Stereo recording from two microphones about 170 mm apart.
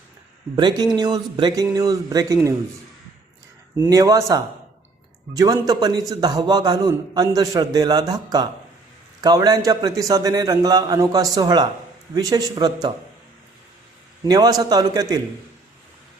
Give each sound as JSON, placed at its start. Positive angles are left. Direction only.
{"t": 0.5, "sound": "a man's voice", "side_deg": -25}
{"t": 3.8, "sound": "a man's voice", "side_deg": -20}
{"t": 14.3, "sound": "a man's voice", "side_deg": -20}